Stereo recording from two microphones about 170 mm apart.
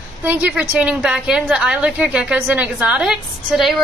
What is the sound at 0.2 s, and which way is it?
A woman's voice, 10° right (ahead or behind).